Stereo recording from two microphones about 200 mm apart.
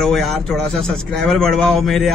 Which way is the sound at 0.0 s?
Centre (ahead or behind).